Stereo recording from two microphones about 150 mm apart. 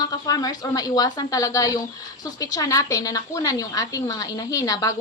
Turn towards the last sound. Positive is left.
turn(degrees=25)  # may be behind; listen again after turning